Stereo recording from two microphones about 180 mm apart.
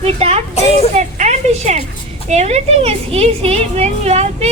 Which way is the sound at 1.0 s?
40° right (ahead or behind).